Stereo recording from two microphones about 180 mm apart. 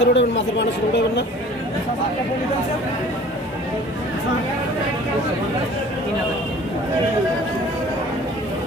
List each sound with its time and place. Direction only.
0.0 s speech: 80° left